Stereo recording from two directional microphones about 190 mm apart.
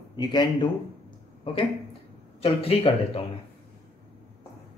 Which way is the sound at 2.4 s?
30° left (ahead or behind).